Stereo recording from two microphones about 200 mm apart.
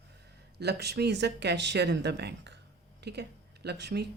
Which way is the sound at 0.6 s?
55° right (ahead or behind).